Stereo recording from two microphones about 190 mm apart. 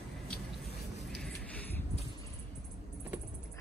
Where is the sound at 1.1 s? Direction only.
5° left (ahead or behind).